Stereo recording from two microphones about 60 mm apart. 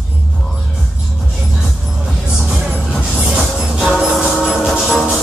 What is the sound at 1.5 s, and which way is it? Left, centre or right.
Music, centre.